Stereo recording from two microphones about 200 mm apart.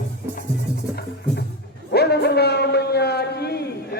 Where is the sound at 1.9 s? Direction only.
55° left (ahead or behind).